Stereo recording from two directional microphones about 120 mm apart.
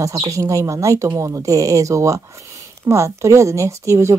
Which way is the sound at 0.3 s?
25° right (ahead or behind).